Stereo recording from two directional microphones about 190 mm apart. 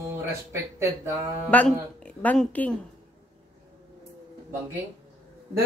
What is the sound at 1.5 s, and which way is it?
Speech, 10° left (ahead or behind).